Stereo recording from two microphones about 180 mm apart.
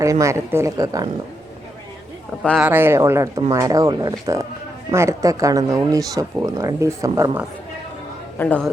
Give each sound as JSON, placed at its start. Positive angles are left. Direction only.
{"t": 0.0, "sound": "speech", "side_deg": -15}
{"t": 2.6, "sound": "speech", "side_deg": -10}
{"t": 8.4, "sound": "a man's voice", "side_deg": 10}